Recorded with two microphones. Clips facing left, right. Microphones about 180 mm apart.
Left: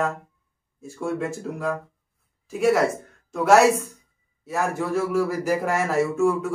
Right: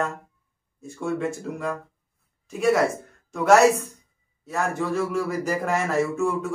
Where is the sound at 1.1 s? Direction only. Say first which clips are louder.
Right 1 dB; 5° left (ahead or behind).